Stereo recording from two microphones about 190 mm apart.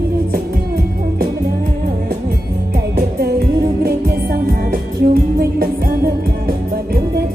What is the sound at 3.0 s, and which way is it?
Music, 55° right (ahead or behind).